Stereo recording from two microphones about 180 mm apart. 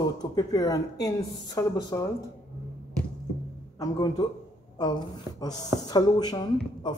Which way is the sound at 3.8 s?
20° left (ahead or behind).